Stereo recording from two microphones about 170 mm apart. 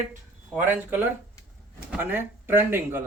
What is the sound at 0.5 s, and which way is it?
Speech, 10° right (ahead or behind).